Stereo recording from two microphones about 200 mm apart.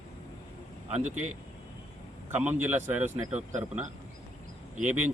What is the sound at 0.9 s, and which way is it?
Speech, 35° right (ahead or behind).